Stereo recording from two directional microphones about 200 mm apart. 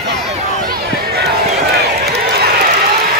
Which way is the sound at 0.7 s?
55° right (ahead or behind).